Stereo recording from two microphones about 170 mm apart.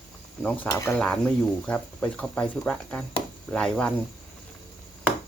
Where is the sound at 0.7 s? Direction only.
20° left (ahead or behind).